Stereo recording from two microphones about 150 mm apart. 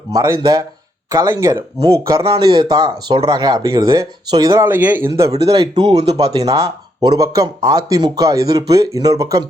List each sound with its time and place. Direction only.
0.1 s speech: 25° right (ahead or behind)
2.2 s speech: 35° right (ahead or behind)
4.6 s speech: 15° right (ahead or behind)
6.0 s speech: 45° right (ahead or behind)
6.4 s speech: 25° right (ahead or behind)